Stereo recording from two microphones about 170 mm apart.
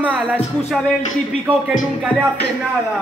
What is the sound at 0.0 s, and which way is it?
Music, 10° right (ahead or behind).